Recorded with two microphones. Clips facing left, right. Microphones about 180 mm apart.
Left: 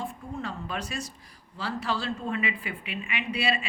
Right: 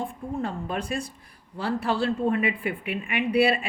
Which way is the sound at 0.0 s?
55° right (ahead or behind).